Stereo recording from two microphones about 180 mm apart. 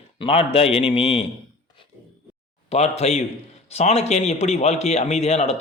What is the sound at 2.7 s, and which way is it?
A man's voice, 35° left (ahead or behind).